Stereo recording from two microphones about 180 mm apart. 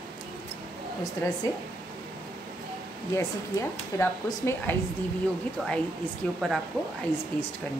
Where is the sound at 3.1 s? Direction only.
15° left (ahead or behind).